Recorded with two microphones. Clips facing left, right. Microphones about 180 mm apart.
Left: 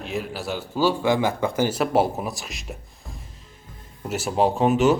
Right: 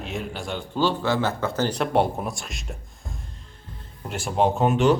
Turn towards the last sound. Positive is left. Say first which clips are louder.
# left 1 dB
turn(degrees=5)  # may be behind; listen again after turning